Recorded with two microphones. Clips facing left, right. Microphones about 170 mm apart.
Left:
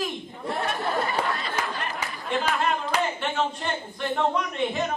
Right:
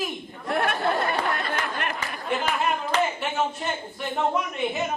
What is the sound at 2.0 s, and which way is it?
A man's voice, 5° right (ahead or behind).